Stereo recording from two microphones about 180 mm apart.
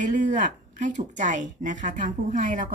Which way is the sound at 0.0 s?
45° right (ahead or behind).